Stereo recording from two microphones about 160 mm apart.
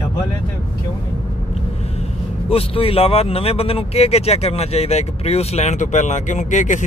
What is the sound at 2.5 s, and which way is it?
Speech, 35° left (ahead or behind).